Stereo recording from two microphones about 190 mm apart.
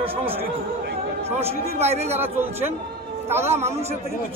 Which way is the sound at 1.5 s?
35° right (ahead or behind).